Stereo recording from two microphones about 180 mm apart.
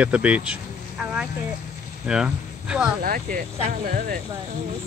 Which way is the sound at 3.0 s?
50° right (ahead or behind).